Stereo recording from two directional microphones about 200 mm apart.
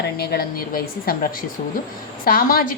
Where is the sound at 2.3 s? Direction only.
45° left (ahead or behind).